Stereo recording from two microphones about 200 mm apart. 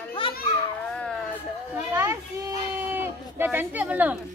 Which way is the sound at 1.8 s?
15° right (ahead or behind).